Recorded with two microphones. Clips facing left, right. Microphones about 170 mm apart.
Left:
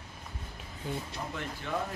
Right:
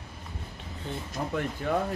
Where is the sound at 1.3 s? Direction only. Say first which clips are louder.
Right 8 dB; 45° right (ahead or behind).